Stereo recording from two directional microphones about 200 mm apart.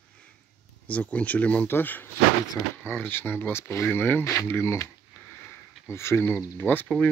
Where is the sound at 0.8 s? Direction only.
5° left (ahead or behind).